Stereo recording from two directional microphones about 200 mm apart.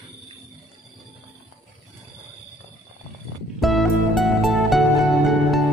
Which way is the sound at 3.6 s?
Centre (ahead or behind).